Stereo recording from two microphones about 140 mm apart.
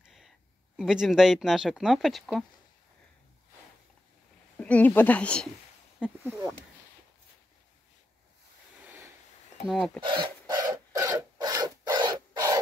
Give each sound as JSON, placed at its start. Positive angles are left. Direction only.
{"t": 0.0, "sound": "a sound", "side_deg": 0}
{"t": 0.7, "sound": "speech", "side_deg": -5}
{"t": 4.6, "sound": "speech", "side_deg": 10}
{"t": 6.0, "sound": "speech", "side_deg": -5}
{"t": 9.7, "sound": "speech", "side_deg": 0}
{"t": 10.0, "sound": "filing", "side_deg": -30}